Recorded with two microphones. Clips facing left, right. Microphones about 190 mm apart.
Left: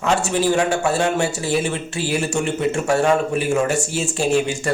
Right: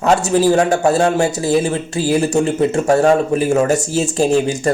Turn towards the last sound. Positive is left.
turn(degrees=-40)  # may be behind; listen again after turning